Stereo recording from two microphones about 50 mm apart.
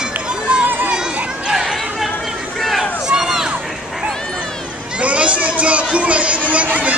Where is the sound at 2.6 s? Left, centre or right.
Centre.